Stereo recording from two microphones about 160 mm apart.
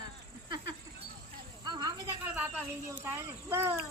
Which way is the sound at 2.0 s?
10° right (ahead or behind).